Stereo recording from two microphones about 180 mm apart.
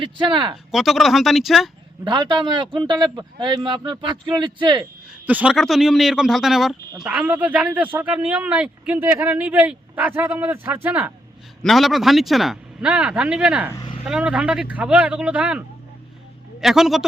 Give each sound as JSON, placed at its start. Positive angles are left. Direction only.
{"t": 0.0, "sound": "a man's voice", "side_deg": -25}
{"t": 0.5, "sound": "speech", "side_deg": 0}
{"t": 2.0, "sound": "a man's voice", "side_deg": -25}
{"t": 5.2, "sound": "a man's voice", "side_deg": -10}
{"t": 11.6, "sound": "speech", "side_deg": 0}
{"t": 13.7, "sound": "vehicle", "side_deg": 25}
{"t": 14.0, "sound": "a man's voice", "side_deg": -5}